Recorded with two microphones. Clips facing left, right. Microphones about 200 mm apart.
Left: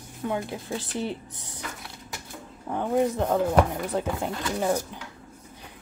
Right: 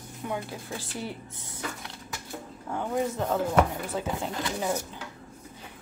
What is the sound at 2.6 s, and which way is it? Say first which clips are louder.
Speech: left 5 dB; 15° left (ahead or behind).